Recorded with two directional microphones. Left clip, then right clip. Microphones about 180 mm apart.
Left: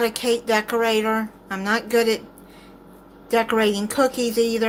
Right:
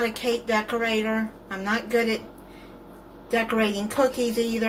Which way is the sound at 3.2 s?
60° left (ahead or behind).